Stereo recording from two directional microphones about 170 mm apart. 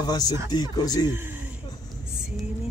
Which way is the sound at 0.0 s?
25° left (ahead or behind).